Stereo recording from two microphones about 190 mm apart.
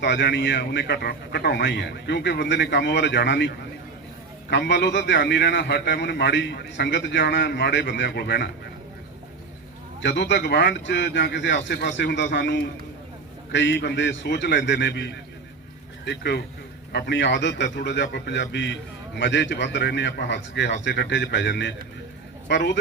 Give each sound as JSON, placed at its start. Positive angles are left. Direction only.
{"t": 0.0, "sound": "a man's voice", "side_deg": 65}
{"t": 10.0, "sound": "a man's voice", "side_deg": 70}